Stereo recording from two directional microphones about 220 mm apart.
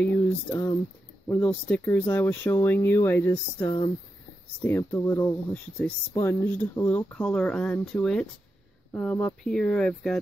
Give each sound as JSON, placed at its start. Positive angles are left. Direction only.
{"t": 0.0, "sound": "speech", "side_deg": 10}
{"t": 3.6, "sound": "speech", "side_deg": 20}
{"t": 4.6, "sound": "speech", "side_deg": 10}